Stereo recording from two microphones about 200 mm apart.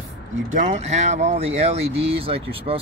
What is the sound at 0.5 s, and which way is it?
Speech, 35° right (ahead or behind).